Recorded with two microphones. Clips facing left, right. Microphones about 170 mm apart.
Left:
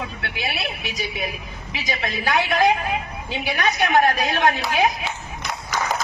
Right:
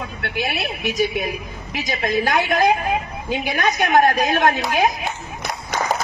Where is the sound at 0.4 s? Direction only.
45° right (ahead or behind).